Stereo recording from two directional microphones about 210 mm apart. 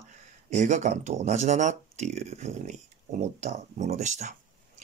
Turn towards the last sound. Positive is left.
turn(degrees=-35)  # may be behind; listen again after turning